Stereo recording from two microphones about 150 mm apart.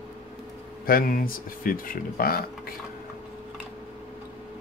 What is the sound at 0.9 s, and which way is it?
Speech, 75° left (ahead or behind).